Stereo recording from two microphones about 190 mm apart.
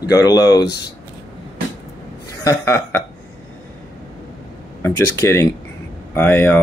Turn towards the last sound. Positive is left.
turn(degrees=10)  # may be behind; listen again after turning